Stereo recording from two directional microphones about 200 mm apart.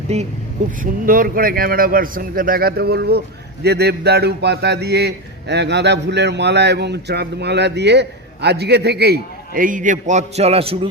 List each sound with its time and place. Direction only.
0.1 s speech: 30° right (ahead or behind)
0.8 s a man's voice: 45° right (ahead or behind); by 10.8 s 30° right (ahead or behind)